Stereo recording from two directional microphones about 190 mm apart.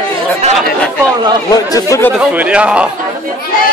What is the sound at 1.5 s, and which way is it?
Speech, 20° left (ahead or behind).